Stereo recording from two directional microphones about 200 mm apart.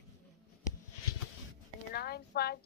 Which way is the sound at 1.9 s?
50° left (ahead or behind).